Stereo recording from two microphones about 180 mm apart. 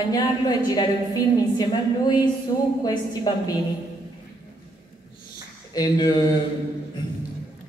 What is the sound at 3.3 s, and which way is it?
Speech, 20° left (ahead or behind).